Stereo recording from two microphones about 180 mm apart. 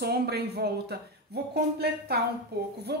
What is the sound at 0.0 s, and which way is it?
Speech, 60° right (ahead or behind).